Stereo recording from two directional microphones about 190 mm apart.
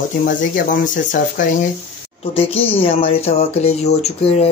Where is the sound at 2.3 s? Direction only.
30° left (ahead or behind).